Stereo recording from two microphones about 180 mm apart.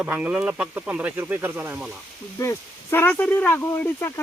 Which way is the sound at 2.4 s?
15° left (ahead or behind).